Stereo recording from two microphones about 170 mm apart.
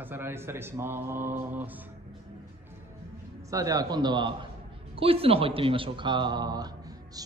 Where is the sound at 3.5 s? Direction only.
20° right (ahead or behind).